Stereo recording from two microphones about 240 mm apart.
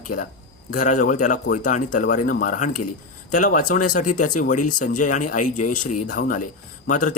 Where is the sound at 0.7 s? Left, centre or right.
Left.